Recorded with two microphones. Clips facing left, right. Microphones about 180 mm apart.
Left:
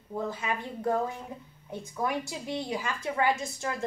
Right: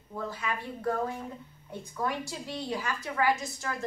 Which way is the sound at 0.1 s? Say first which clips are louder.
Left 3 dB; 25° left (ahead or behind).